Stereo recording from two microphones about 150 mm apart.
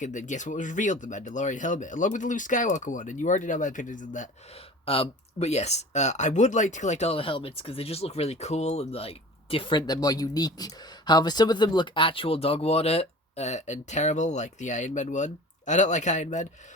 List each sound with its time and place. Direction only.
0.0 s speech: 55° left (ahead or behind)
4.9 s speech: 45° left (ahead or behind)